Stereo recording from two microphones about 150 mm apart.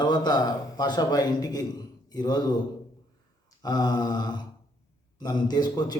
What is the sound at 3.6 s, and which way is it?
Speech, 25° left (ahead or behind).